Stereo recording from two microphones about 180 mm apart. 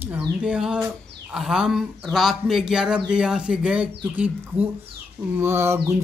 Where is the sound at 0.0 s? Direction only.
10° right (ahead or behind).